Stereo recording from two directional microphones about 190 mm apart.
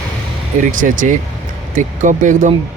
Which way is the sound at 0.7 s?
45° right (ahead or behind).